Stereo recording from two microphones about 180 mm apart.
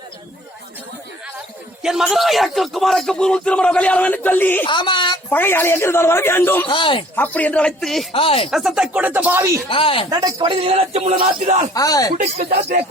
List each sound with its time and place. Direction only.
1.8 s a man's voice: 5° right (ahead or behind)
4.6 s speech: 25° left (ahead or behind)
5.3 s a man's voice: 10° left (ahead or behind)
6.7 s speech: 30° left (ahead or behind)
7.2 s a man's voice: 10° left (ahead or behind)
8.1 s speech: 30° left (ahead or behind)
8.4 s speech: centre (ahead or behind)
9.6 s speech: 30° left (ahead or behind)
10.1 s speech: 20° right (ahead or behind); by 11.1 s 35° right (ahead or behind)
11.7 s speech: 20° left (ahead or behind)
12.1 s a man's voice: 50° right (ahead or behind)